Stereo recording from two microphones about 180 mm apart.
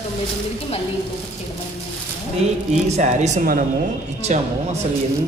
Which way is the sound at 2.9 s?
40° right (ahead or behind).